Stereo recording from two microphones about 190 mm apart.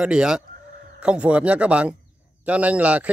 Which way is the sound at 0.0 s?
5° right (ahead or behind).